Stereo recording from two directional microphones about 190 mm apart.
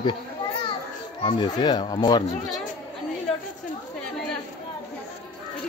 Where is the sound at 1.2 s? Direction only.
25° left (ahead or behind).